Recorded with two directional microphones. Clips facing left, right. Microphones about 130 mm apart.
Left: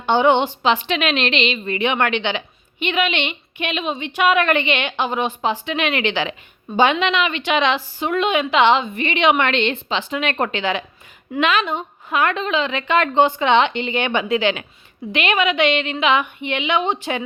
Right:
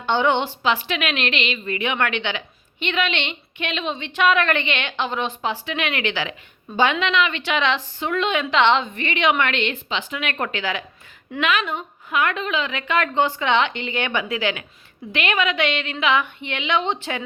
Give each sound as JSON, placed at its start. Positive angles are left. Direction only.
{"t": 0.0, "sound": "a woman's voice", "side_deg": 15}
{"t": 9.0, "sound": "a woman's voice", "side_deg": 20}